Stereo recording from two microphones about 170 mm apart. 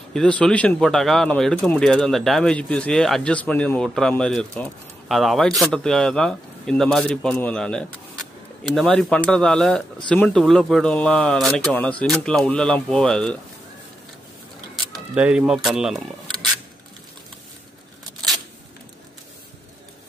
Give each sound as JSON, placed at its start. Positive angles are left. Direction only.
{"t": 0.1, "sound": "speech", "side_deg": 5}
{"t": 15.1, "sound": "speech", "side_deg": -5}